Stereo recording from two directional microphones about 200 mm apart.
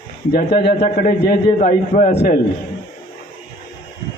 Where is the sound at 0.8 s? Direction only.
45° left (ahead or behind).